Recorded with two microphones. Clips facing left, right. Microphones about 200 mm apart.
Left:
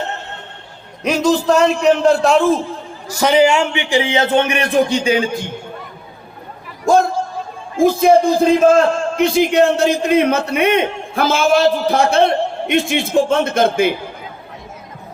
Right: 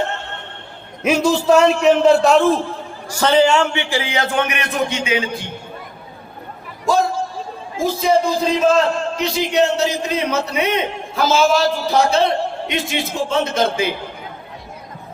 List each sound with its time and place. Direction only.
1.0 s a man's voice: 5° right (ahead or behind)
3.2 s a man's voice: 10° left (ahead or behind); by 5.3 s 40° left (ahead or behind)
6.8 s a sound: 50° left (ahead or behind)
7.8 s a man's voice: 55° left (ahead or behind)